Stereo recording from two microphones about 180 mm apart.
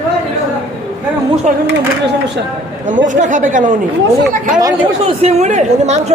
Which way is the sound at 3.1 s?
45° right (ahead or behind).